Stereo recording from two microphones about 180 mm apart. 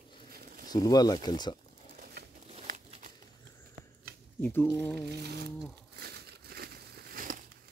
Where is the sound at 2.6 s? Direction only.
45° right (ahead or behind).